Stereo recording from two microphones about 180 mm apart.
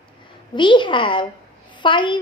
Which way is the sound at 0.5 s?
25° left (ahead or behind).